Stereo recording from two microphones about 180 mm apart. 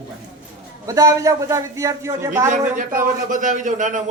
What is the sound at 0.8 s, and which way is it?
Speech, 20° right (ahead or behind).